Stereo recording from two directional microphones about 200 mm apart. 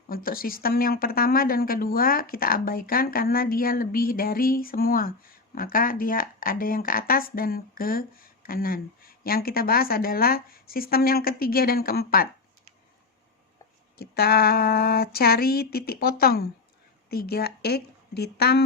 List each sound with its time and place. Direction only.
0.1 s speech: 45° left (ahead or behind)
14.0 s a woman's voice: 50° left (ahead or behind)